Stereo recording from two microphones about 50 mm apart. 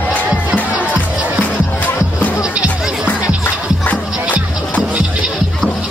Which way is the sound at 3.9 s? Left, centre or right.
Left.